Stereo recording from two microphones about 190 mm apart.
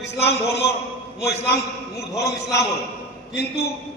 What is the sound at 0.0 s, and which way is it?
Speech, 60° left (ahead or behind).